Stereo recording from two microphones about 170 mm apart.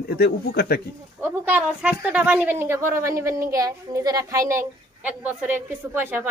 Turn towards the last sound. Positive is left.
turn(degrees=-10)  # may be behind; listen again after turning